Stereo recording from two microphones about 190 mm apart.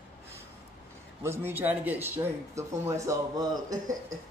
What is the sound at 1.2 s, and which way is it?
A man's voice, 10° right (ahead or behind).